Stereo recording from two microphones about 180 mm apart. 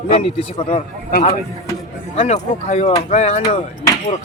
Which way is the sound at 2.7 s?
40° left (ahead or behind).